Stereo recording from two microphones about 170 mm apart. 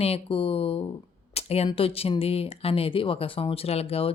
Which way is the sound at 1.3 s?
35° left (ahead or behind).